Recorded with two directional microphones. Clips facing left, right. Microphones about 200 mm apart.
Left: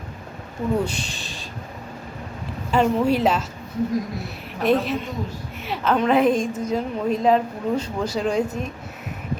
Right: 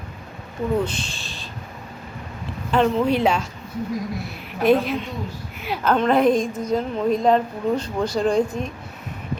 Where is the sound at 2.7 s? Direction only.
10° left (ahead or behind).